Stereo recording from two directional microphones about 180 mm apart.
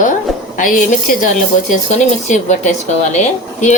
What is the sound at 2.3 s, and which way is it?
Speech, 40° left (ahead or behind).